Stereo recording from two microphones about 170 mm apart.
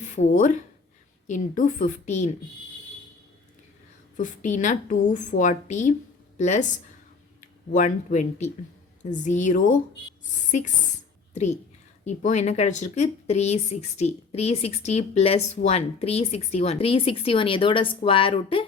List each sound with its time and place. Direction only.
0.0 s a woman's voice: 45° left (ahead or behind)
4.2 s a woman's voice: 45° left (ahead or behind)
11.3 s speech: 40° left (ahead or behind)